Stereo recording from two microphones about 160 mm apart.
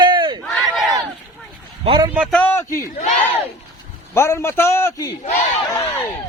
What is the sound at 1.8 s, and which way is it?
Speech, 25° right (ahead or behind).